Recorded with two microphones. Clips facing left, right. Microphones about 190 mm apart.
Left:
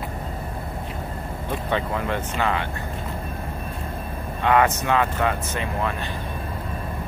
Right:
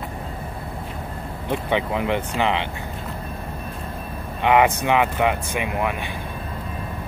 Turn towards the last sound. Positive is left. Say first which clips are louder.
# right 2 dB
turn(degrees=-15)  # may be behind; listen again after turning